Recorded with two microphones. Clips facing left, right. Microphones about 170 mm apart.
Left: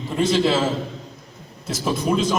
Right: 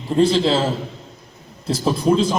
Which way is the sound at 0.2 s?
30° right (ahead or behind).